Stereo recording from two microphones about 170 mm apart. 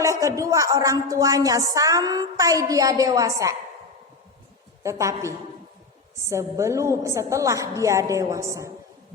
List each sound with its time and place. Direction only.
0.0 s a woman's voice: 20° right (ahead or behind)
4.8 s a woman's voice: 20° right (ahead or behind)